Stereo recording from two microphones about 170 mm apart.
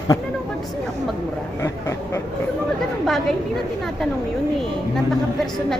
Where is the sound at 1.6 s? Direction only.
15° left (ahead or behind).